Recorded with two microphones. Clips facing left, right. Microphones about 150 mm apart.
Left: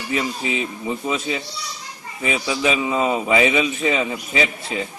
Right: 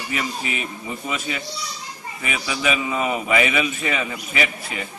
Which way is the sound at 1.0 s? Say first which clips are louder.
Left 2 dB; 25° left (ahead or behind).